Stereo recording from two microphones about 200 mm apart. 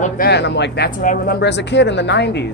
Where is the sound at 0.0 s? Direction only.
55° left (ahead or behind).